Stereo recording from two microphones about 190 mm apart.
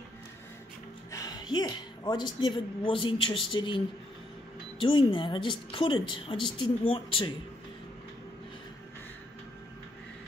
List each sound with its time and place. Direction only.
1.1 s a woman's voice: 20° left (ahead or behind)